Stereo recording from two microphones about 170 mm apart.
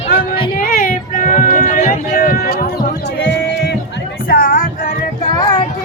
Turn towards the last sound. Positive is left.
turn(degrees=25)  # may be behind; listen again after turning